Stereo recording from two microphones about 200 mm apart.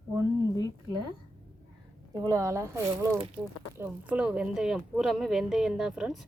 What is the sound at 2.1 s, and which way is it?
Speech, 15° right (ahead or behind).